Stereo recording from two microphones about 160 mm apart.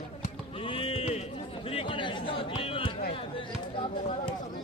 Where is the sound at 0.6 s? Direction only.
35° left (ahead or behind).